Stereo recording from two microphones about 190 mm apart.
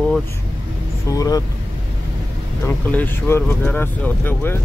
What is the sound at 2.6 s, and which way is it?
Speech, 10° left (ahead or behind).